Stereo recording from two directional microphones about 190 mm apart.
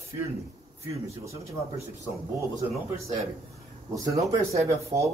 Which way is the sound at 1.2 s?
15° right (ahead or behind).